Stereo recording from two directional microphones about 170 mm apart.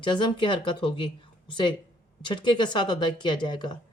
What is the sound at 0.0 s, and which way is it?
Speech, 30° left (ahead or behind).